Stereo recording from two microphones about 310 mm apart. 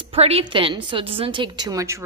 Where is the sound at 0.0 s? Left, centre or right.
Centre.